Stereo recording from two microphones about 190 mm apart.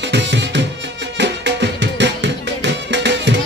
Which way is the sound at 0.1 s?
70° right (ahead or behind).